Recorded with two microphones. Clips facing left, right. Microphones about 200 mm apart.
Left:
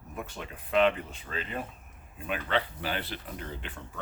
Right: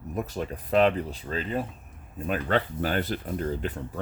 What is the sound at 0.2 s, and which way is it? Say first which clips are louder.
Speech: right 8 dB; 40° right (ahead or behind).